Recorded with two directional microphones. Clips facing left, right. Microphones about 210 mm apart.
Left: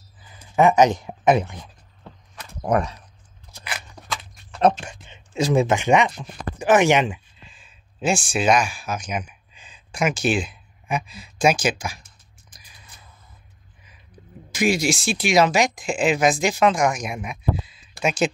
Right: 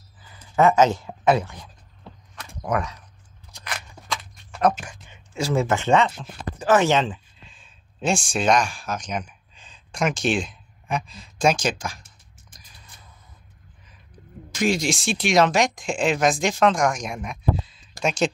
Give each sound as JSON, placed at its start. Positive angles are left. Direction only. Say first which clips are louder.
{"t": 0.4, "sound": "speech", "louder": "left 1 dB", "side_deg": 15}
{"t": 2.6, "sound": "speech", "louder": "left 4 dB", "side_deg": 30}
{"t": 3.6, "sound": "a sound", "louder": "even", "side_deg": 5}
{"t": 4.6, "sound": "speech", "louder": "left 3 dB", "side_deg": 25}
{"t": 7.3, "sound": "speech", "louder": "left 1 dB", "side_deg": 5}
{"t": 14.5, "sound": "speech", "louder": "left 2 dB", "side_deg": 10}